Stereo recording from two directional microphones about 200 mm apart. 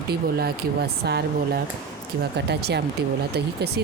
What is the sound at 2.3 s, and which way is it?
Speech, 55° right (ahead or behind).